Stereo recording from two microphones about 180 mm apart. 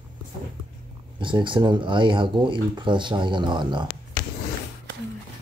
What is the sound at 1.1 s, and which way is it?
Speech, 25° right (ahead or behind).